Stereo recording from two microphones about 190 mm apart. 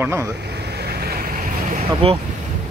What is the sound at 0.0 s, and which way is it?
Speech, 10° right (ahead or behind).